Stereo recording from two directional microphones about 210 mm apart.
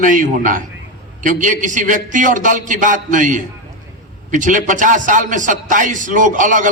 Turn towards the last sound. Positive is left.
turn(degrees=-40)  # may be behind; listen again after turning